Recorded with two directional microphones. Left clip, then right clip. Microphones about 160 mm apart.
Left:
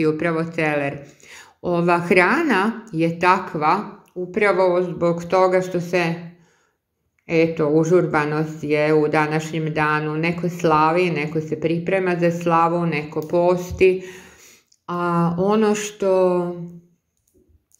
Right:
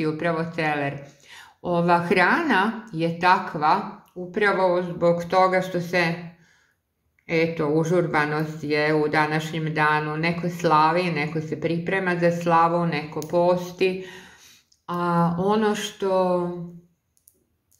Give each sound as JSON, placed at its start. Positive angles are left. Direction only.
{"t": 0.0, "sound": "speech", "side_deg": 25}
{"t": 7.2, "sound": "speech", "side_deg": 20}